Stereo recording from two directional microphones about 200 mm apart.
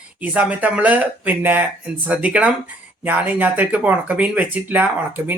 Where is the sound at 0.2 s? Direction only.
5° right (ahead or behind).